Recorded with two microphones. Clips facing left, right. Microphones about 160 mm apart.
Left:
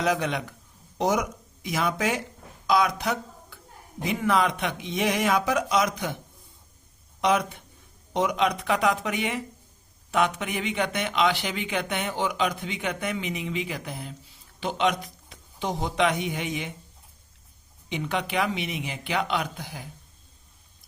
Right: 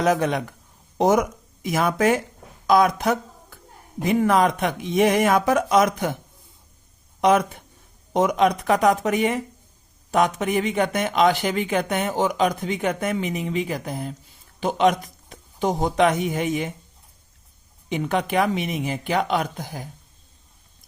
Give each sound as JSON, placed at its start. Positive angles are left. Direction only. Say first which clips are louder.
{"t": 0.0, "sound": "speech", "louder": "right 5 dB", "side_deg": -45}
{"t": 7.2, "sound": "a man's voice", "louder": "right 5 dB", "side_deg": -50}
{"t": 17.8, "sound": "speech", "louder": "right 5 dB", "side_deg": -45}